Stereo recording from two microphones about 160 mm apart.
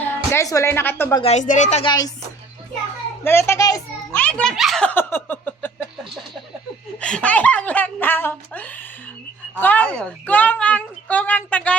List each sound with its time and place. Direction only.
0.3 s a woman's voice: 20° left (ahead or behind)
1.2 s speech: 45° left (ahead or behind)
1.8 s speech: 25° left (ahead or behind)
3.2 s a woman's voice: 15° left (ahead or behind)
4.1 s a woman's voice: 10° left (ahead or behind)
7.0 s a woman's voice: 5° left (ahead or behind)